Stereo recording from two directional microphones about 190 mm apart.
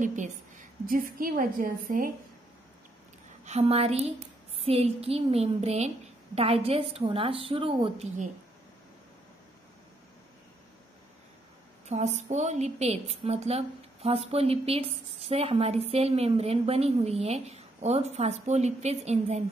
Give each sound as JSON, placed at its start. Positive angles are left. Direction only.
{"t": 0.0, "sound": "a woman's voice", "side_deg": -40}
{"t": 3.4, "sound": "a woman's voice", "side_deg": -35}
{"t": 11.9, "sound": "a woman's voice", "side_deg": -35}